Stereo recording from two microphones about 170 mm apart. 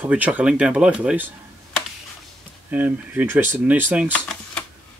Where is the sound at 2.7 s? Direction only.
10° right (ahead or behind).